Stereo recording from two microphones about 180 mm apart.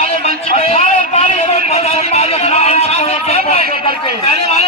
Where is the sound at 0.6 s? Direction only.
35° left (ahead or behind).